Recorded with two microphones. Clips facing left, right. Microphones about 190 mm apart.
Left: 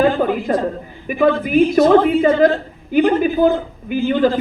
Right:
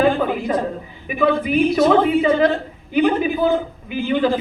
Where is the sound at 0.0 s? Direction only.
45° left (ahead or behind).